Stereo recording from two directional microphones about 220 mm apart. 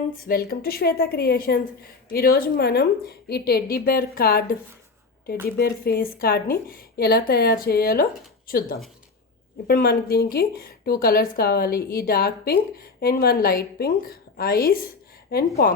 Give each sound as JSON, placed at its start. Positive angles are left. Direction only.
{"t": 0.2, "sound": "speech", "side_deg": 45}
{"t": 5.5, "sound": "speech", "side_deg": 45}